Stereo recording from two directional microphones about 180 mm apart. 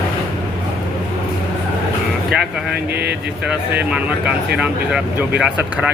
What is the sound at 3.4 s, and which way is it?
Speech, 5° right (ahead or behind).